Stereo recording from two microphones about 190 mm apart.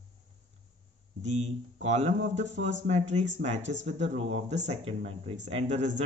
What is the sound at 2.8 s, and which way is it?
Speech, 35° right (ahead or behind).